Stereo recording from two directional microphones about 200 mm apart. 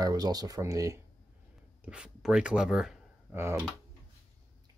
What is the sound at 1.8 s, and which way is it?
Speech, 5° right (ahead or behind).